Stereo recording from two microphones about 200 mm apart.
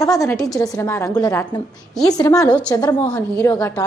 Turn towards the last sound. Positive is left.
turn(degrees=15)  # may be behind; listen again after turning